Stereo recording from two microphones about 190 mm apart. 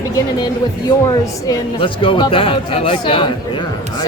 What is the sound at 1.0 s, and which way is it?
Speech, 25° left (ahead or behind).